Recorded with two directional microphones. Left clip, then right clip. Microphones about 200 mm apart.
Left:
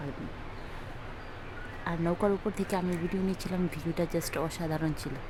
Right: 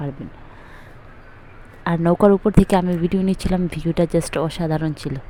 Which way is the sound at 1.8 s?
30° right (ahead or behind).